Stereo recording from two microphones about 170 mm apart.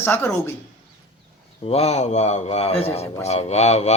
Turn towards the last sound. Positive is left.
turn(degrees=40)  # may be behind; listen again after turning